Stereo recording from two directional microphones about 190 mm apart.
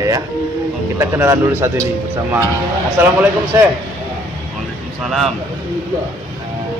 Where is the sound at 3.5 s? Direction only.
10° right (ahead or behind).